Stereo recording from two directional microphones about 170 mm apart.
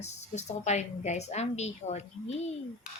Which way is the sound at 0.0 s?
40° left (ahead or behind).